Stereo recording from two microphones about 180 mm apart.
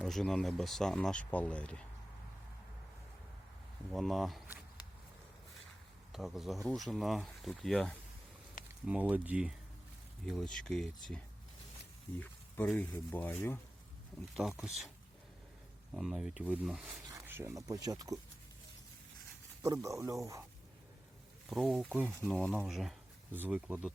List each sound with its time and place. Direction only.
0.0 s speech: centre (ahead or behind)
3.9 s speech: centre (ahead or behind)
6.1 s speech: centre (ahead or behind)
8.9 s speech: 10° right (ahead or behind)
12.2 s speech: 10° left (ahead or behind)
14.3 s speech: 5° right (ahead or behind)
16.0 s speech: centre (ahead or behind)
17.1 s a sound: 15° right (ahead or behind)
17.7 s speech: 20° right (ahead or behind)
19.6 s speech: 15° right (ahead or behind)
21.5 s speech: centre (ahead or behind)
22.2 s speech: 5° left (ahead or behind)